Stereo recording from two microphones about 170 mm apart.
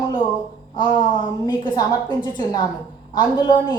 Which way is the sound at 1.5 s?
25° left (ahead or behind).